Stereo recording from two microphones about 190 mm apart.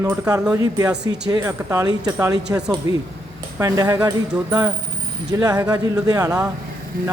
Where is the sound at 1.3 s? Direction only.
20° right (ahead or behind).